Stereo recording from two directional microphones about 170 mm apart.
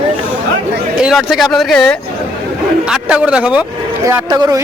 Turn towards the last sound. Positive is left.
turn(degrees=-20)  # may be behind; listen again after turning